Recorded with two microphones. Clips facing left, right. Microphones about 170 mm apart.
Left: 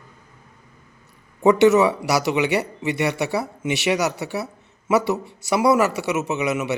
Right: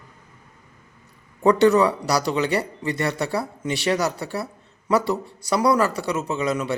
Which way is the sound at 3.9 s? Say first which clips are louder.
Left 1 dB; centre (ahead or behind).